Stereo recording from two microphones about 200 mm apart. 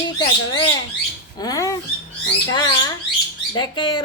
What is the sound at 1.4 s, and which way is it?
A woman's voice, 15° left (ahead or behind).